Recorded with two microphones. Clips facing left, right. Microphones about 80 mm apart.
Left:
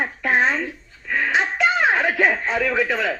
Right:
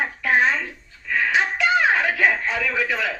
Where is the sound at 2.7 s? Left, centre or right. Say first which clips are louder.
Left 2 dB; centre.